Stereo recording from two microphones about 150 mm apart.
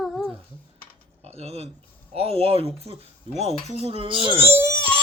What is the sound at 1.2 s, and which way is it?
Speech, 45° right (ahead or behind).